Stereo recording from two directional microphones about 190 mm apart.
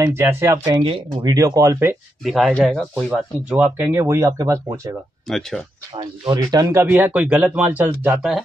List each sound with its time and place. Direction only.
0.0 s speech: 10° right (ahead or behind)
0.8 s speech: 30° right (ahead or behind); by 2.0 s 15° right (ahead or behind)
2.2 s speech: centre (ahead or behind); by 4.9 s 15° right (ahead or behind)
5.3 s speech: centre (ahead or behind)
5.9 s speech: 20° right (ahead or behind)